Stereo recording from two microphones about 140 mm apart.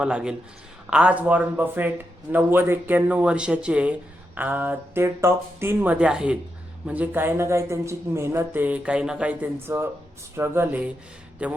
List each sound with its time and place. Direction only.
0.0 s a man's voice: 5° right (ahead or behind)